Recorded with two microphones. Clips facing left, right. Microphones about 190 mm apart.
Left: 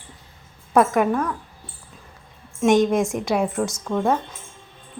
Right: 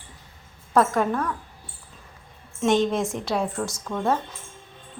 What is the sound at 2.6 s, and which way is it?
A woman's voice, 15° left (ahead or behind).